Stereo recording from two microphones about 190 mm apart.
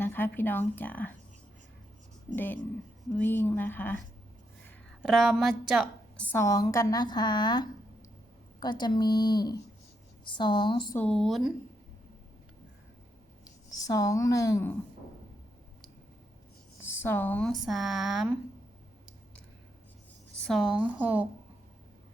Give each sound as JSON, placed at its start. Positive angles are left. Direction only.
{"t": 0.0, "sound": "speech", "side_deg": 10}
{"t": 2.3, "sound": "speech", "side_deg": 10}
{"t": 5.0, "sound": "a woman's voice", "side_deg": 0}
{"t": 6.3, "sound": "a woman's voice", "side_deg": 15}
{"t": 10.9, "sound": "speech", "side_deg": 5}
{"t": 13.4, "sound": "speech", "side_deg": 20}
{"t": 17.0, "sound": "speech", "side_deg": 10}
{"t": 20.5, "sound": "speech", "side_deg": 0}